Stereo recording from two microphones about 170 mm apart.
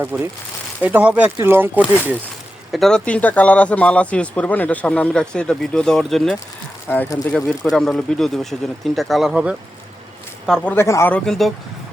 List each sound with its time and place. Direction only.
0.0 s speech: 15° right (ahead or behind)
2.7 s speech: 5° left (ahead or behind)
10.4 s speech: 5° left (ahead or behind)